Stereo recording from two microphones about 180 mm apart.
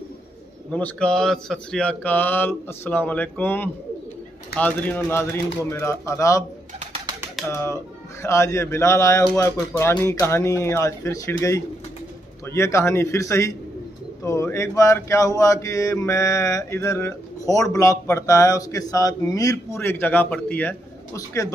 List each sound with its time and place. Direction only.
0.7 s mantra: 5° left (ahead or behind)
7.5 s mantra: 15° left (ahead or behind)